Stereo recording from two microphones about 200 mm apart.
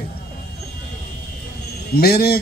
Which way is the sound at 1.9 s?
50° left (ahead or behind).